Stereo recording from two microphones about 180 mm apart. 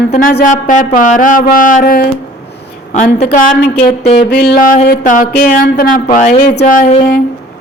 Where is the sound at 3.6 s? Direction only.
60° left (ahead or behind); by 6.9 s 45° left (ahead or behind).